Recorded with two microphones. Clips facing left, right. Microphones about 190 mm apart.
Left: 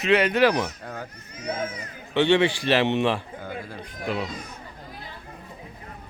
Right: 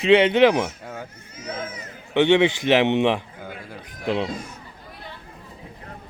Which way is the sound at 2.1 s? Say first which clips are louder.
Right 3 dB; 20° right (ahead or behind).